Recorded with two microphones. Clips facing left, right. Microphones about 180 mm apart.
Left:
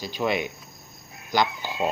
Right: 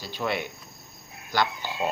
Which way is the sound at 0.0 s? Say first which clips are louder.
Left 4 dB; 15° left (ahead or behind).